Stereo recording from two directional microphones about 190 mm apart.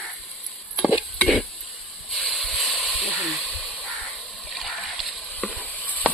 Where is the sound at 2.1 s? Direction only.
Centre (ahead or behind).